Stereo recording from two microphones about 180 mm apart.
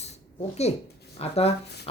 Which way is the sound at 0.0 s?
35° left (ahead or behind).